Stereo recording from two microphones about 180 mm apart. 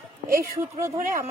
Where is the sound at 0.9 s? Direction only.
50° right (ahead or behind).